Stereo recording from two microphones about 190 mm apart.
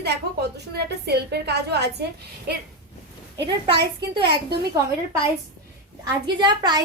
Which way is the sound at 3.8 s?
60° right (ahead or behind).